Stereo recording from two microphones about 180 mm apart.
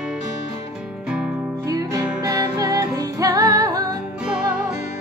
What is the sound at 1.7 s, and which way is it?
Music, 20° right (ahead or behind).